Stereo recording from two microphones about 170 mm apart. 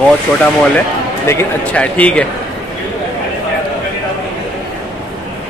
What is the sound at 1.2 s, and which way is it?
Speech, 10° left (ahead or behind).